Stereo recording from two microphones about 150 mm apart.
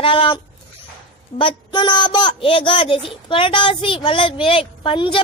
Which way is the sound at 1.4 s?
30° left (ahead or behind).